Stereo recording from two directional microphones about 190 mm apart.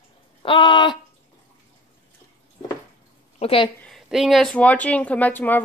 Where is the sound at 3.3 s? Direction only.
30° left (ahead or behind).